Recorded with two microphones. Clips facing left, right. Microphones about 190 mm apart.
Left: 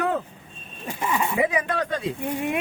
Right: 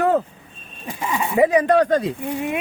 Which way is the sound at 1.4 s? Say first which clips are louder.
Right 13 dB; 40° right (ahead or behind).